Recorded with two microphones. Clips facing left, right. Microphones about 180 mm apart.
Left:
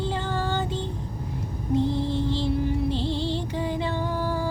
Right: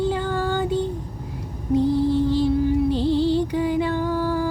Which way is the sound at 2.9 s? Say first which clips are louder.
Right 7 dB; 10° right (ahead or behind).